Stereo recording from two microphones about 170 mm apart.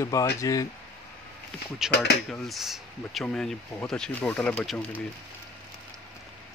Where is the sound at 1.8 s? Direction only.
5° right (ahead or behind).